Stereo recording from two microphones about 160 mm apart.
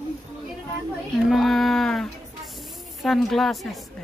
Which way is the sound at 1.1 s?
Centre (ahead or behind).